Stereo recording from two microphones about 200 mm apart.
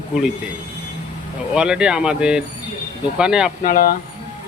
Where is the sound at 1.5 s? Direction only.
5° right (ahead or behind).